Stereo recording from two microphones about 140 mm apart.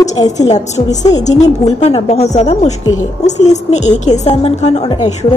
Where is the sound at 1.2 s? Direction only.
55° left (ahead or behind).